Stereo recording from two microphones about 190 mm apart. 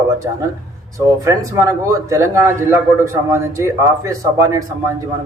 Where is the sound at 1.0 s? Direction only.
15° right (ahead or behind).